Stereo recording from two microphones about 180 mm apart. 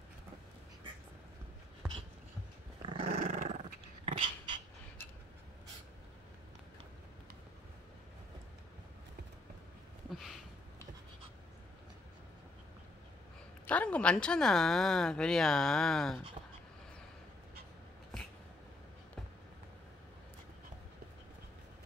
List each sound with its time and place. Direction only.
2.8 s dog: 30° right (ahead or behind)
3.3 s dog: 45° right (ahead or behind)
13.7 s a woman's voice: 5° left (ahead or behind)